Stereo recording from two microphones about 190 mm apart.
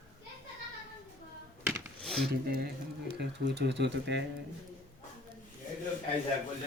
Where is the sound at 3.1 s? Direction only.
65° right (ahead or behind).